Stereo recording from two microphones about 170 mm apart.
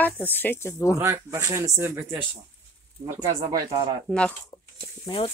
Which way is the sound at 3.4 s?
25° right (ahead or behind).